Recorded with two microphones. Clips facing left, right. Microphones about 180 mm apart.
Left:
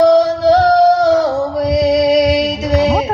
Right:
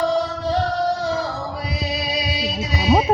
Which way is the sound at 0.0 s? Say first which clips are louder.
Left 11 dB; 80° left.